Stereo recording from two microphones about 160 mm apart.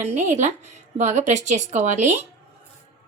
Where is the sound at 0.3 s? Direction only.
45° right (ahead or behind).